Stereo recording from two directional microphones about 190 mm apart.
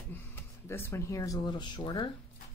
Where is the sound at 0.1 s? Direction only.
10° left (ahead or behind).